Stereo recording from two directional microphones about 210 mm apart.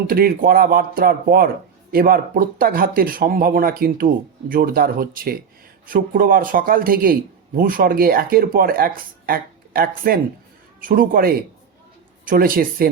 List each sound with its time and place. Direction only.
0.1 s a man's voice: 45° right (ahead or behind)